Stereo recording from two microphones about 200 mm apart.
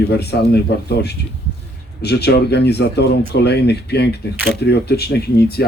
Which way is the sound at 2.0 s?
55° left (ahead or behind).